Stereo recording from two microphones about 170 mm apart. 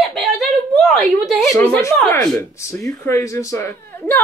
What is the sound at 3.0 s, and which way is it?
Speech, 15° left (ahead or behind).